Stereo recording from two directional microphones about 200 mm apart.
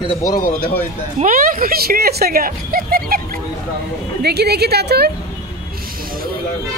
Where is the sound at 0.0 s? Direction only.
20° left (ahead or behind).